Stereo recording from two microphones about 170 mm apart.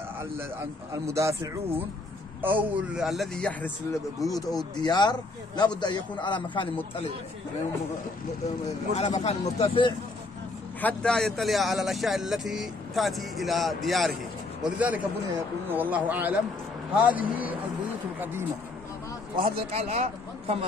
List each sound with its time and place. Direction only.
1.0 s speech: 15° right (ahead or behind); by 3.7 s 5° left (ahead or behind)
4.2 s a man's voice: 20° left (ahead or behind)
8.9 s speech: 40° left (ahead or behind)
9.6 s a man's voice: 30° left (ahead or behind)
10.8 s speech: 5° left (ahead or behind); by 17.6 s 10° right (ahead or behind)
19.3 s speech: 55° right (ahead or behind)
19.7 s speech: 35° right (ahead or behind)